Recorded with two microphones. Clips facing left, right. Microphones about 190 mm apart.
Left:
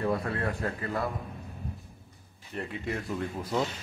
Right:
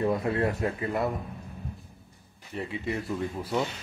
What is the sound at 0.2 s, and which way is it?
Speech, 25° right (ahead or behind).